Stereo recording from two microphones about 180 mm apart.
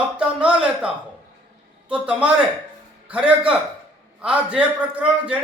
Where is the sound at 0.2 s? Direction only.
5° right (ahead or behind).